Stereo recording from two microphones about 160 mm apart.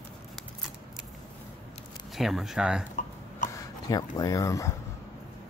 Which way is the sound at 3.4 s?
55° left (ahead or behind).